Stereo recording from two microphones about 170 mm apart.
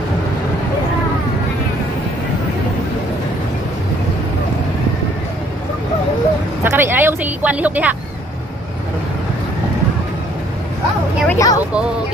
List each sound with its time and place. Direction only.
6.6 s speech: 10° right (ahead or behind)
11.2 s speech: 20° left (ahead or behind)